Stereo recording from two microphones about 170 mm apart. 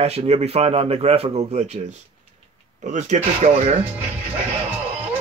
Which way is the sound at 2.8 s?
45° right (ahead or behind).